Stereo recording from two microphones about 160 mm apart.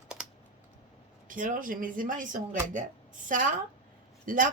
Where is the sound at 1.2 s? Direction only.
55° right (ahead or behind).